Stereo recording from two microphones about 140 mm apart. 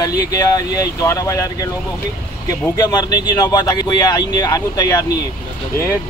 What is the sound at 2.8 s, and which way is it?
Speech, 30° left (ahead or behind).